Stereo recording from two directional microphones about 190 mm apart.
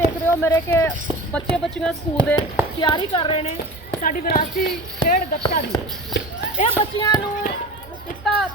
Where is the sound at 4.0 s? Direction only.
45° left (ahead or behind).